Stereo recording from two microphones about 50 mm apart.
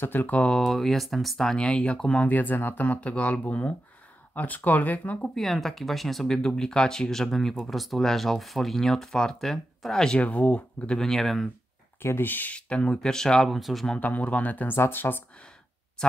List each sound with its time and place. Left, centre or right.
0.0 s speech: left
0.3 s speech: left
0.6 s speech: centre; by 2.2 s left
2.2 s speech: left
5.2 s speech: centre
10.2 s speech: left
11.0 s speech: centre
12.0 s speech: left
12.3 s speech: left
12.5 s speech: left
12.9 s speech: centre
13.9 s speech: left
14.8 s speech: left